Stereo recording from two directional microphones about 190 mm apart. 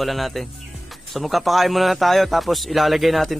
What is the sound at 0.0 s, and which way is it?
A man's voice, centre (ahead or behind).